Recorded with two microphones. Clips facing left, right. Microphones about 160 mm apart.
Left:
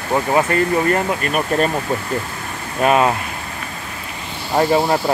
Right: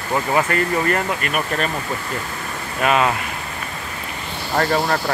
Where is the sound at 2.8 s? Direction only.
30° left (ahead or behind).